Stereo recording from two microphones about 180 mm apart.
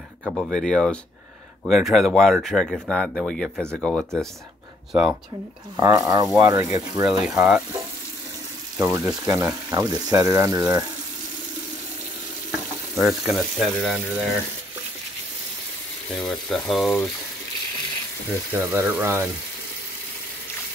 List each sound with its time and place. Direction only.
0.2 s speech: 5° left (ahead or behind)
5.8 s speech: 20° right (ahead or behind)
7.1 s speech: 5° right (ahead or behind)
8.7 s speech: 15° right (ahead or behind)
12.9 s speech: centre (ahead or behind)
16.2 s speech: centre (ahead or behind)
18.7 s speech: 10° right (ahead or behind)